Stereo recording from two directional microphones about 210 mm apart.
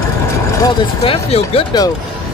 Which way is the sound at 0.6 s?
25° left (ahead or behind).